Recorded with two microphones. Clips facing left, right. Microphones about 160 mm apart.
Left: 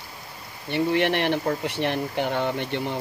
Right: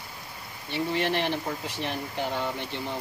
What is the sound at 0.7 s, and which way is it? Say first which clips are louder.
Speech: left 5 dB; 65° left (ahead or behind).